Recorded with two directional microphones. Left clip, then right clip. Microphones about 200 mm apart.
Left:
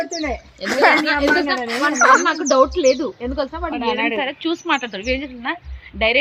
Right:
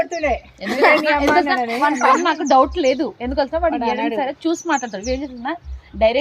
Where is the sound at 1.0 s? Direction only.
55° right (ahead or behind).